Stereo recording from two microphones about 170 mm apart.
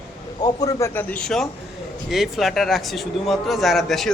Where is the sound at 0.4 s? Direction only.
20° left (ahead or behind).